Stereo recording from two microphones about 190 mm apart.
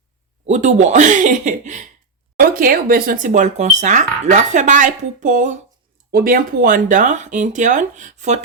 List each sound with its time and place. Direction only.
0.4 s speech: 40° right (ahead or behind)